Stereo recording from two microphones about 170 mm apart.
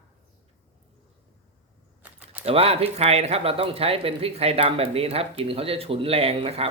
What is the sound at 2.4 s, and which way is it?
Speech, 35° right (ahead or behind).